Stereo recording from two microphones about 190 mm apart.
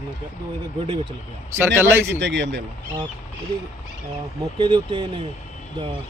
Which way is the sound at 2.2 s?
70° right (ahead or behind).